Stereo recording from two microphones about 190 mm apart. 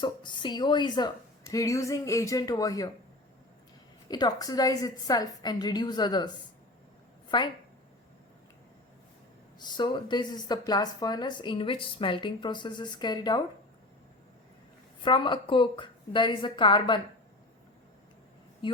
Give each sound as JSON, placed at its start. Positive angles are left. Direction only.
{"t": 0.0, "sound": "speech", "side_deg": 25}
{"t": 4.1, "sound": "a woman's voice", "side_deg": 20}
{"t": 9.6, "sound": "speech", "side_deg": 25}
{"t": 15.0, "sound": "speech", "side_deg": 25}
{"t": 18.6, "sound": "speech", "side_deg": 25}